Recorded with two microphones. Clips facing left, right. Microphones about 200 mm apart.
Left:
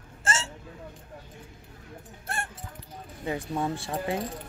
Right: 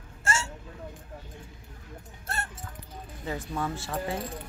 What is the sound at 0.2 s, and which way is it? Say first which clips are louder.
Hiccup: even; 20° left (ahead or behind).